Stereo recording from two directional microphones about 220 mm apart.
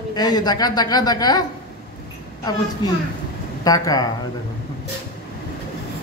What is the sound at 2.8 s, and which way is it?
A child's voice, 20° left (ahead or behind).